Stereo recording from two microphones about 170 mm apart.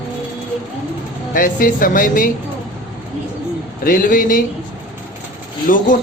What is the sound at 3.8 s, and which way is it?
Speech, 55° left (ahead or behind).